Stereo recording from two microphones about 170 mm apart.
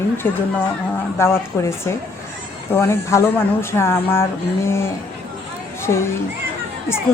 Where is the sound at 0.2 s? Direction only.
10° left (ahead or behind).